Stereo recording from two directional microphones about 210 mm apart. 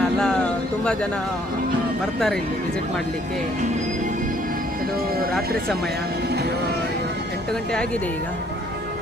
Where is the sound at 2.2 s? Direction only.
5° left (ahead or behind).